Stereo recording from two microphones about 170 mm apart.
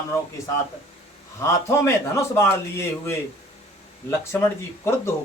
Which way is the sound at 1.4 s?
15° left (ahead or behind).